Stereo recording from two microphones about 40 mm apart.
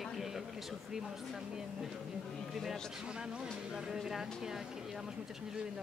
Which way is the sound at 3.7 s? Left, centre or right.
Centre.